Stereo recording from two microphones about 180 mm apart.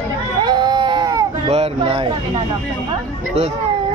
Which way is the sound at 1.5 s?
35° right (ahead or behind).